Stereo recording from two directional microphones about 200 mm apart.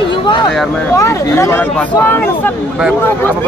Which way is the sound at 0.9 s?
15° left (ahead or behind).